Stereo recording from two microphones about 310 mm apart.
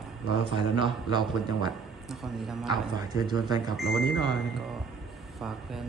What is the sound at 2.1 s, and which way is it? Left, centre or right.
Speech, centre.